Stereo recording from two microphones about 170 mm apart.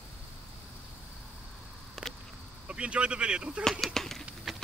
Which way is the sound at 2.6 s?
5° right (ahead or behind).